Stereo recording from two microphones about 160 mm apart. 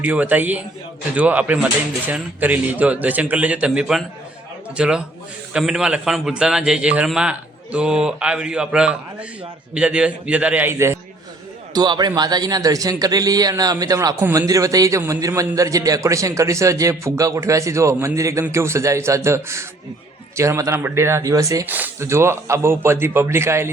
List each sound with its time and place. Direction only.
0.0 s a man's voice: 10° right (ahead or behind)
11.7 s a man's voice: 25° right (ahead or behind)